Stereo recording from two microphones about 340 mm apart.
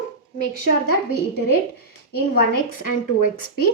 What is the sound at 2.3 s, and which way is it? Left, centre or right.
Speech, left.